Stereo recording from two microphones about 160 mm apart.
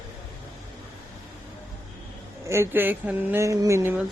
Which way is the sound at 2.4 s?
15° right (ahead or behind).